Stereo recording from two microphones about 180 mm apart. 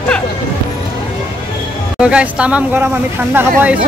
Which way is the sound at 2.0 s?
5° right (ahead or behind).